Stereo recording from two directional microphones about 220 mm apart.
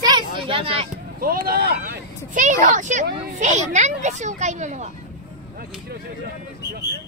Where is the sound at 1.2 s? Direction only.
40° right (ahead or behind).